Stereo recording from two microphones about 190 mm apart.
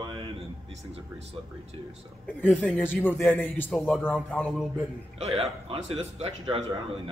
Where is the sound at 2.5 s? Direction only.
10° left (ahead or behind).